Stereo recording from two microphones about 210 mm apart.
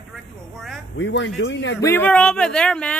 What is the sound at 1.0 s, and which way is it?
Speech, 60° left (ahead or behind).